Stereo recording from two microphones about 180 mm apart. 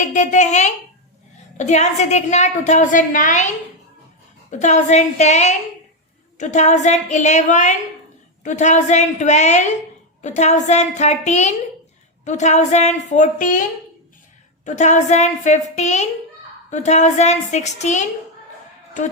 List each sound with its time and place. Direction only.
0.0 s a woman's voice: 45° left (ahead or behind)
4.6 s a woman's voice: 40° left (ahead or behind)
14.6 s a woman's voice: 40° left (ahead or behind)